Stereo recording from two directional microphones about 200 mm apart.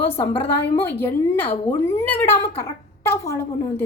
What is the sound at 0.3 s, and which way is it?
A woman's voice, 15° left (ahead or behind).